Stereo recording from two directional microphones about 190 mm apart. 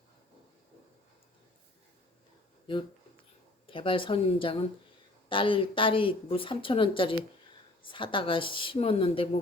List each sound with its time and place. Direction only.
3.7 s a woman's voice: 25° left (ahead or behind)